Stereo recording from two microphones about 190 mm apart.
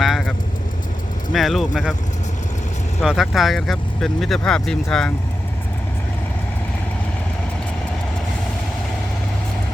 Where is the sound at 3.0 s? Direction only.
Centre (ahead or behind).